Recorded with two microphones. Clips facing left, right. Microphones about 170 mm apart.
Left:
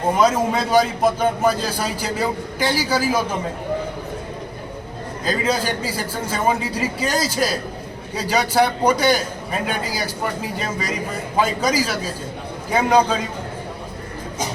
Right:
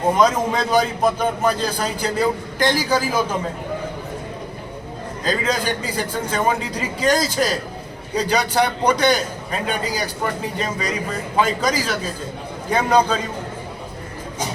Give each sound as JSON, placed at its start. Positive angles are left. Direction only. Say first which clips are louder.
{"t": 0.1, "sound": "a man's voice", "louder": "left 1 dB", "side_deg": 5}
{"t": 5.2, "sound": "a man's voice", "louder": "even", "side_deg": 10}